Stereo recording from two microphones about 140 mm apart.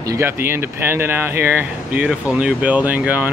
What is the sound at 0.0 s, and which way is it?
Speech, 20° right (ahead or behind).